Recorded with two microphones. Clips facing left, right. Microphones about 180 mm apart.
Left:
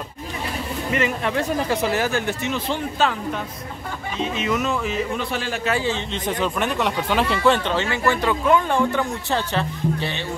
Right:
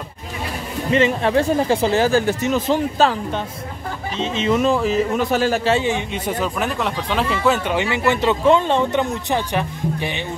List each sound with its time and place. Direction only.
0.9 s speech: 30° right (ahead or behind)
5.7 s speech: 20° right (ahead or behind); by 7.7 s 5° right (ahead or behind)
7.7 s speech: 15° right (ahead or behind)